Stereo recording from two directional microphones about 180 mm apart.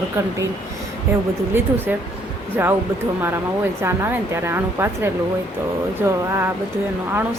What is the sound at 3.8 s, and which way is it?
A woman's voice, 15° right (ahead or behind).